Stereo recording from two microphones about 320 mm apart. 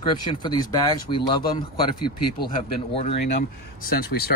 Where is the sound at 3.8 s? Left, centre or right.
Left.